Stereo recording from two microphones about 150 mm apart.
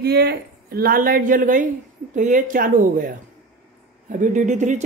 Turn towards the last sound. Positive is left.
turn(degrees=-55)  # may be behind; listen again after turning